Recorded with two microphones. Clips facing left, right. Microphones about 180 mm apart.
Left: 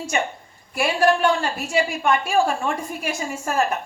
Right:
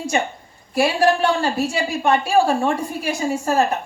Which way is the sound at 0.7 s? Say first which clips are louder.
Right 2 dB; 35° right (ahead or behind).